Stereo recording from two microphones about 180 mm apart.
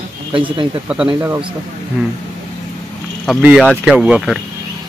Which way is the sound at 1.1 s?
15° right (ahead or behind).